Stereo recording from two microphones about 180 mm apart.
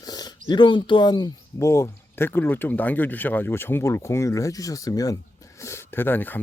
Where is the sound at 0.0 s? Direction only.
20° left (ahead or behind).